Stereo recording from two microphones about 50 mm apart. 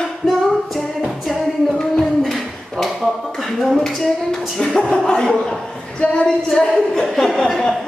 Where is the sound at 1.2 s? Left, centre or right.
Centre.